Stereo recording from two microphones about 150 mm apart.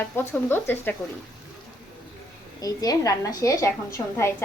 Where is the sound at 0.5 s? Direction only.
15° left (ahead or behind).